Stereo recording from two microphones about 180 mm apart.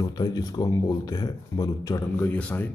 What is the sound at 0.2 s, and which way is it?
A man's voice, 20° left (ahead or behind).